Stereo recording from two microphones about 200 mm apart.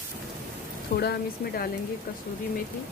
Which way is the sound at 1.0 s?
50° left (ahead or behind).